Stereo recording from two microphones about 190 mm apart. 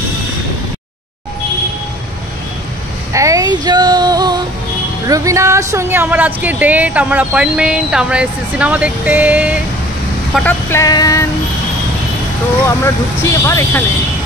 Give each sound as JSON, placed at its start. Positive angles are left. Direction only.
{"t": 3.1, "sound": "child singing", "side_deg": -15}
{"t": 5.0, "sound": "speech", "side_deg": -15}
{"t": 10.7, "sound": "speech", "side_deg": 15}
{"t": 12.6, "sound": "speech", "side_deg": 15}